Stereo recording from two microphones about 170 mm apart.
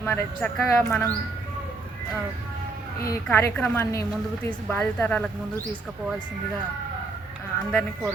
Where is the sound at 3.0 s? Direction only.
15° left (ahead or behind).